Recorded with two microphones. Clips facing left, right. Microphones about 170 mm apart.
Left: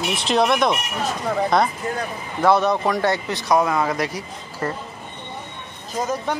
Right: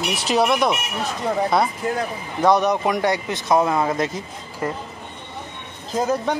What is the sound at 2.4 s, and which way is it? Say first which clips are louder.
Speech: even; 15° right (ahead or behind).